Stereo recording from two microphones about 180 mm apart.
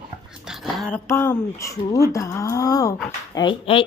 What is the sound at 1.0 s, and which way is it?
Speech, 15° left (ahead or behind).